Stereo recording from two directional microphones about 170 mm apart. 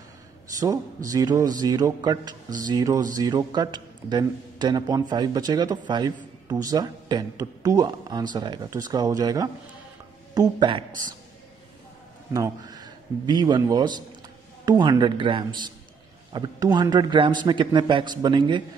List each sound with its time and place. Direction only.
0.6 s a man's voice: 20° right (ahead or behind)
12.3 s a man's voice: 20° right (ahead or behind)